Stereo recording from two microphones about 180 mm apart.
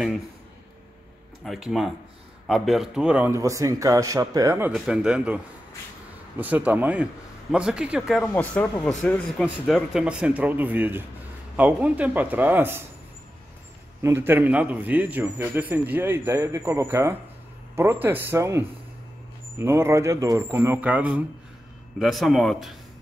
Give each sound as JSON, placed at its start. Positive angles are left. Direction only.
{"t": 1.4, "sound": "a man's voice", "side_deg": 0}
{"t": 4.7, "sound": "a man's voice", "side_deg": -5}
{"t": 8.3, "sound": "a man's voice", "side_deg": 10}
{"t": 14.0, "sound": "a man's voice", "side_deg": -15}